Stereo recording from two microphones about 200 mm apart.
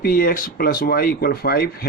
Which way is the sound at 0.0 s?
45° left (ahead or behind).